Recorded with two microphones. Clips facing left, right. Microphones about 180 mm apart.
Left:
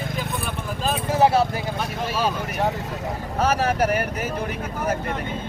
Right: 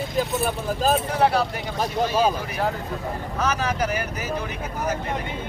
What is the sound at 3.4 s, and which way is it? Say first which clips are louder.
Speech: left 4 dB; 55° left (ahead or behind).